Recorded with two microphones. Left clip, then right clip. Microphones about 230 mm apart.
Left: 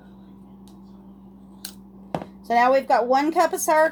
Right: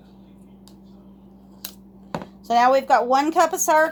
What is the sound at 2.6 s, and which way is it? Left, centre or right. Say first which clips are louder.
Speech: right 2 dB; centre.